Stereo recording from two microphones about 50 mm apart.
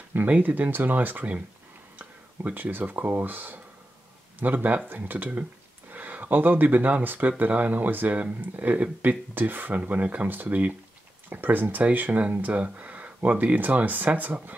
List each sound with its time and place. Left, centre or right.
0.1 s speech: right